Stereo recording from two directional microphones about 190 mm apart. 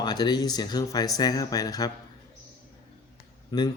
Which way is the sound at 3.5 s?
20° left (ahead or behind).